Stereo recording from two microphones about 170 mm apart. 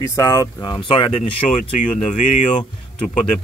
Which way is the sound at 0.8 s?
30° left (ahead or behind).